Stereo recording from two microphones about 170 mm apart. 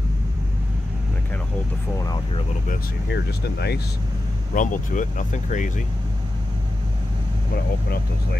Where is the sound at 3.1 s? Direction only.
75° left (ahead or behind).